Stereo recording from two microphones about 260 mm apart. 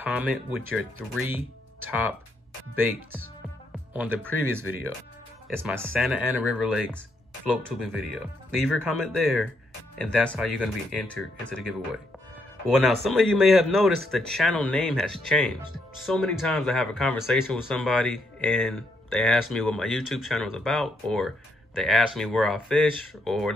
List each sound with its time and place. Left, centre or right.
0.0 s speech: centre
1.9 s speech: centre